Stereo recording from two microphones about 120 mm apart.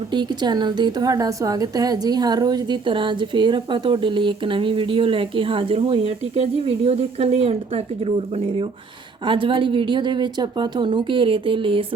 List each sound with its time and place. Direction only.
0.1 s a woman's voice: 40° right (ahead or behind); by 7.5 s 55° right (ahead or behind)
9.2 s a woman's voice: 45° right (ahead or behind)